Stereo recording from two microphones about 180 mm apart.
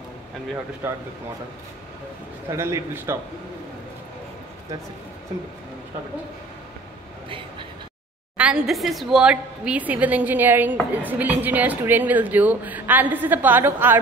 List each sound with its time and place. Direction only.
0.8 s a woman's voice: 15° right (ahead or behind)
2.5 s a woman's voice: 15° right (ahead or behind)
7.2 s speech: 30° right (ahead or behind)
8.4 s a woman's voice: 5° right (ahead or behind)